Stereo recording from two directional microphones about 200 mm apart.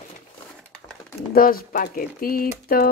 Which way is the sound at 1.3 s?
45° left (ahead or behind).